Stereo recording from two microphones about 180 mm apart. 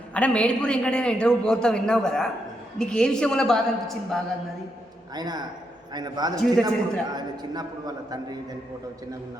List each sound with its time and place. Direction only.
0.1 s a man's voice: 5° left (ahead or behind)
5.1 s a man's voice: 20° right (ahead or behind)